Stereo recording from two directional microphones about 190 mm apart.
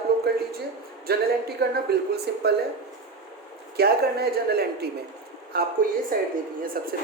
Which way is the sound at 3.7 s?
55° right (ahead or behind).